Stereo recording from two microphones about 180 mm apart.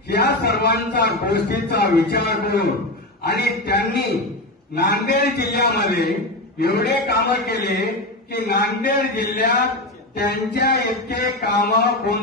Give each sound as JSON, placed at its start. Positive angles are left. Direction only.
{"t": 0.2, "sound": "a man's voice", "side_deg": 65}